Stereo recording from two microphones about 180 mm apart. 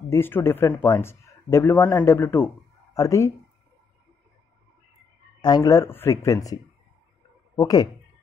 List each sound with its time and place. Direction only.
0.1 s a man's voice: 15° left (ahead or behind)
5.4 s speech: 20° left (ahead or behind)